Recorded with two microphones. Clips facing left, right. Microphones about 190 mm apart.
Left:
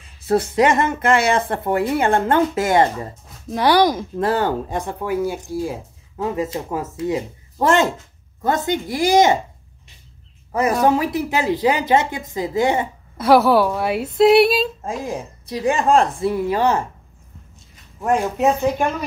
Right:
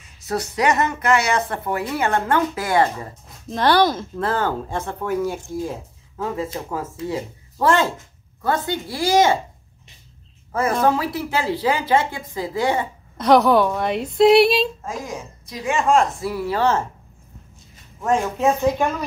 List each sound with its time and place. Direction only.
0.3 s speech: 25° left (ahead or behind)
3.4 s speech: 10° left (ahead or behind)
6.1 s speech: 20° left (ahead or behind)
10.8 s speech: 15° left (ahead or behind)
13.2 s a woman's voice: 5° left (ahead or behind)
15.0 s speech: 30° left (ahead or behind); by 16.8 s 15° left (ahead or behind)
18.0 s speech: 15° left (ahead or behind)